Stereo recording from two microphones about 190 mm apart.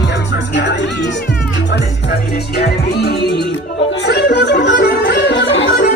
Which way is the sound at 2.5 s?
60° left (ahead or behind).